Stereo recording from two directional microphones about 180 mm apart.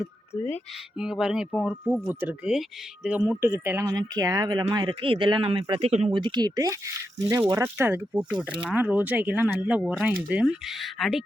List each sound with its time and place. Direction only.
0.9 s speech: 5° right (ahead or behind)
3.2 s speech: 15° right (ahead or behind)